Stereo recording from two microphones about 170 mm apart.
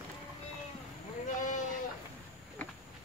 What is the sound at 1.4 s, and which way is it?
Sheep, 45° left (ahead or behind).